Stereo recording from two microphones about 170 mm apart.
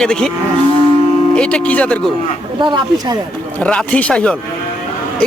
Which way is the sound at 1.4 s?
5° left (ahead or behind).